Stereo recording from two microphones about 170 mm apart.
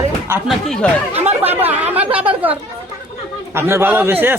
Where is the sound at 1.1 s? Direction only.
40° right (ahead or behind).